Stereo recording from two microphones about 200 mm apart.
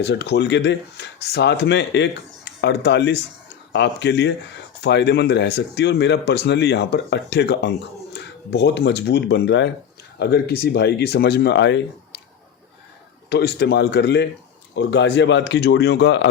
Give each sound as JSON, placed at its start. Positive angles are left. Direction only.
{"t": 0.0, "sound": "speech", "side_deg": 55}
{"t": 13.3, "sound": "speech", "side_deg": 55}